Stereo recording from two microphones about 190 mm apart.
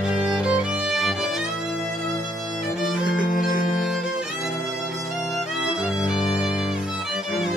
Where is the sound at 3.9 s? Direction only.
5° right (ahead or behind).